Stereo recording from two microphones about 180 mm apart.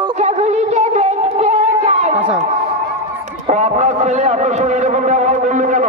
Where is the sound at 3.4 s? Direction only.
40° right (ahead or behind).